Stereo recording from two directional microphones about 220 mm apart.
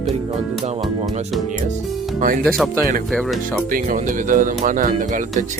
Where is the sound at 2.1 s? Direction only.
40° right (ahead or behind).